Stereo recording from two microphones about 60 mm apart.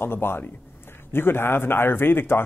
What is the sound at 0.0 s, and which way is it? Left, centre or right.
Speech, left.